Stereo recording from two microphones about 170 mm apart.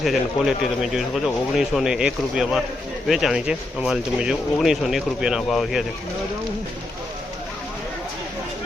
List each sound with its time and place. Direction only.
0.0 s speech: centre (ahead or behind)